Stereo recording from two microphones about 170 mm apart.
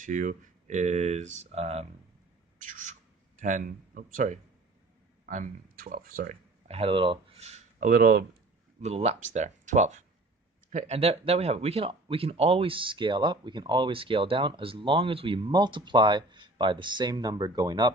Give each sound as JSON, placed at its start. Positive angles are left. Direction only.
{"t": 0.0, "sound": "speech", "side_deg": -50}
{"t": 2.6, "sound": "bird", "side_deg": -50}
{"t": 3.3, "sound": "speech", "side_deg": -50}
{"t": 6.7, "sound": "speech", "side_deg": -35}
{"t": 7.9, "sound": "speech", "side_deg": -60}
{"t": 8.8, "sound": "speech", "side_deg": -40}